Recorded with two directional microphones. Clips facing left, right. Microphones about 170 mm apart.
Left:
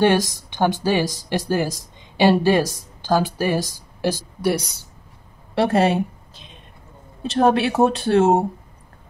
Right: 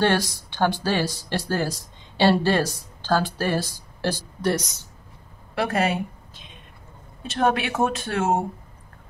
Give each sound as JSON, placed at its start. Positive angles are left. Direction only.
{"t": 0.0, "sound": "speech", "side_deg": 15}
{"t": 5.5, "sound": "a woman's voice", "side_deg": 30}